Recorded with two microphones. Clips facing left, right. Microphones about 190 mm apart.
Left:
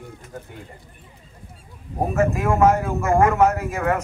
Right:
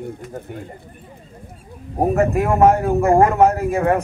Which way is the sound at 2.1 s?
35° right (ahead or behind).